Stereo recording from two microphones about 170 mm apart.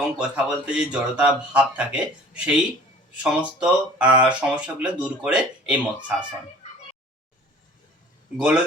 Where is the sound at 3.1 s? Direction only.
5° right (ahead or behind).